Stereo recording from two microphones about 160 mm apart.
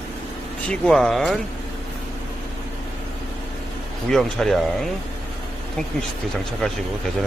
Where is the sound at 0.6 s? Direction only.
5° left (ahead or behind).